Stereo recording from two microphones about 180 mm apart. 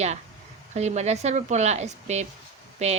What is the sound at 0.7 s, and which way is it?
Speech, 40° right (ahead or behind).